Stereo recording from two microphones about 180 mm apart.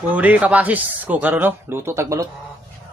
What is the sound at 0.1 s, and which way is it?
A man's voice, 10° right (ahead or behind).